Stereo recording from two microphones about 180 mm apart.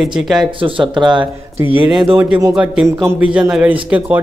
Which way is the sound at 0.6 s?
25° right (ahead or behind).